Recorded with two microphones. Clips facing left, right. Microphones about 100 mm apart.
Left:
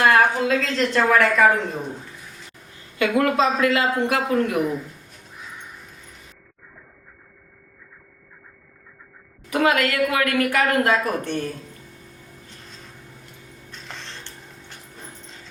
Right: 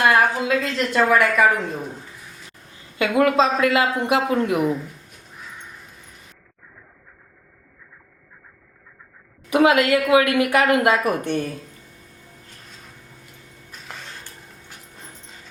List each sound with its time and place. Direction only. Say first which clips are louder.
0.1 s a woman's voice: left 1 dB; 5° right (ahead or behind)
3.0 s a woman's voice: right 2 dB; 20° right (ahead or behind)
9.5 s a woman's voice: right 4 dB; 20° right (ahead or behind)
13.7 s a sound: right 1 dB; 5° right (ahead or behind)